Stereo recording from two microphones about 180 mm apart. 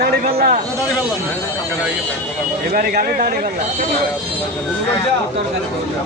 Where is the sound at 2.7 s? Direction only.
55° right (ahead or behind).